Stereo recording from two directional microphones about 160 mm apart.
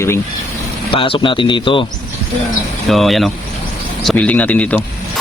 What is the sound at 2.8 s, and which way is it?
Speech, centre (ahead or behind).